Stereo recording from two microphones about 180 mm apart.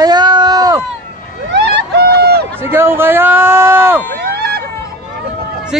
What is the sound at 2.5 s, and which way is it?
Speech, 15° right (ahead or behind).